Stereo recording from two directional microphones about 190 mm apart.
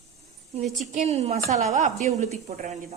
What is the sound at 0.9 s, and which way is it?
A woman's voice, 35° right (ahead or behind).